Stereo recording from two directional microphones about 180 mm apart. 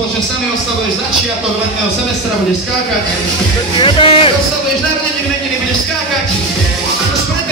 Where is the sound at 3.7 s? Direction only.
30° left (ahead or behind).